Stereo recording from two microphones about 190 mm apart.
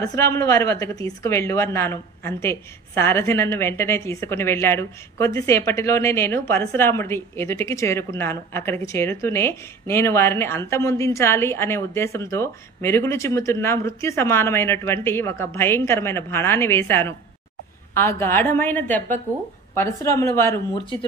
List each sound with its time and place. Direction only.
0.0 s speech: 15° left (ahead or behind)